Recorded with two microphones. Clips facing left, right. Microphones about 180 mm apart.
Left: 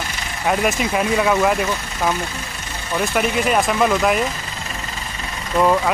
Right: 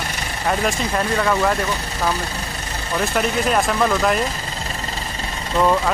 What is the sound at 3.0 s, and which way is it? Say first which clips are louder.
Speech: left 1 dB; centre (ahead or behind).